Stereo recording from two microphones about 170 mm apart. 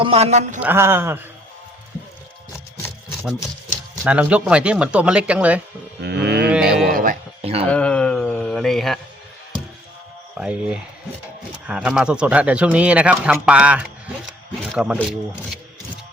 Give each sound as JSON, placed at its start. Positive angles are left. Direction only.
{"t": 0.0, "sound": "speech", "side_deg": -35}
{"t": 0.6, "sound": "speech", "side_deg": -15}
{"t": 4.0, "sound": "speech", "side_deg": -5}
{"t": 6.0, "sound": "cattle", "side_deg": -80}
{"t": 6.5, "sound": "a sound", "side_deg": -5}
{"t": 6.9, "sound": "a sound", "side_deg": -55}
{"t": 7.4, "sound": "a sound", "side_deg": -35}
{"t": 7.7, "sound": "mantra", "side_deg": 5}
{"t": 10.3, "sound": "a man's voice", "side_deg": -5}